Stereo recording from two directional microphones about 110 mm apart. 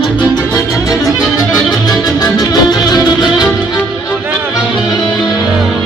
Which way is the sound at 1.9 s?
35° left (ahead or behind).